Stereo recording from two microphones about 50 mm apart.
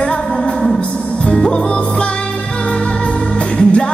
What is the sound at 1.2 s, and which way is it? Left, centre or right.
Music, centre.